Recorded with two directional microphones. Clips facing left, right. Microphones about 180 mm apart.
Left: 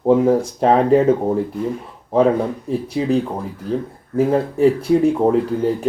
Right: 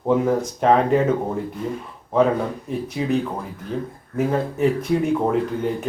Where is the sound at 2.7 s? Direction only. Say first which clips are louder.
Left 4 dB; 30° left (ahead or behind).